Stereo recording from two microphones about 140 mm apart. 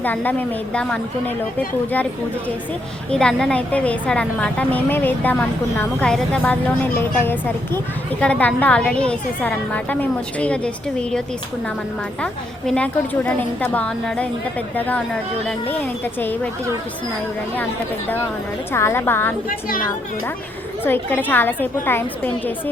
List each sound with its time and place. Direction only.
0.0 s a woman's voice: 15° left (ahead or behind)
3.1 s a woman's voice: 5° left (ahead or behind)
12.2 s a woman's voice: 5° left (ahead or behind)
16.2 s a woman's voice: 15° left (ahead or behind)
18.7 s a woman's voice: 20° left (ahead or behind)
19.5 s a woman's voice: 90° left
20.8 s a woman's voice: 15° left (ahead or behind)